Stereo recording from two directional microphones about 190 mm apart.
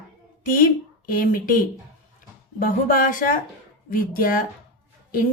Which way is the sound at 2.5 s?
45° left (ahead or behind).